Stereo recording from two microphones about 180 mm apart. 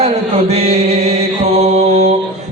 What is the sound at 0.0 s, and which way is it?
Chant, 35° right (ahead or behind).